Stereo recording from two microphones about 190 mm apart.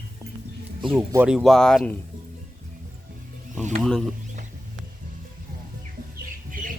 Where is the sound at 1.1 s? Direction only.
5° right (ahead or behind).